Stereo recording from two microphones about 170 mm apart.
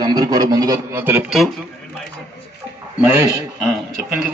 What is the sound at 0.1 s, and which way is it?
A man's voice, 25° right (ahead or behind).